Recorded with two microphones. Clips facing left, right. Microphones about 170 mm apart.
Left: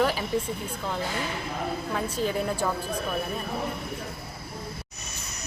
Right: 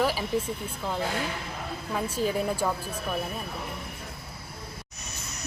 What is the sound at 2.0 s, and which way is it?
Speech, 5° right (ahead or behind).